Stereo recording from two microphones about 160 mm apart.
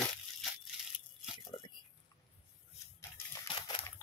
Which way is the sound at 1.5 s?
35° left (ahead or behind).